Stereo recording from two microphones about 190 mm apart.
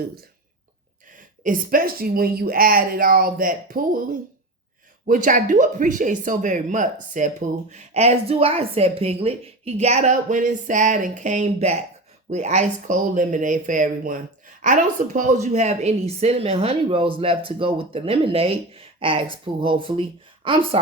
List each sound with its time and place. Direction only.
1.1 s speech: 45° right (ahead or behind)
5.0 s speech: 45° right (ahead or behind); by 20.7 s 30° right (ahead or behind)